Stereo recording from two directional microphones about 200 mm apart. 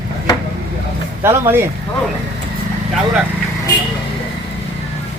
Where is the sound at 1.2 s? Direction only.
10° right (ahead or behind).